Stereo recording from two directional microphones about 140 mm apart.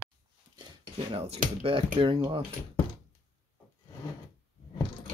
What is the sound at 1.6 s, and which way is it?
Speech, 40° right (ahead or behind).